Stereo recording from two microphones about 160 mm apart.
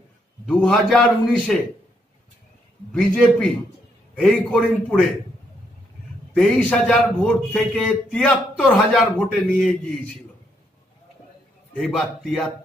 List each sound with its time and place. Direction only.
0.5 s a man's voice: centre (ahead or behind)
2.9 s a man's voice: 5° left (ahead or behind)
6.3 s a man's voice: 5° left (ahead or behind)
11.7 s a man's voice: centre (ahead or behind)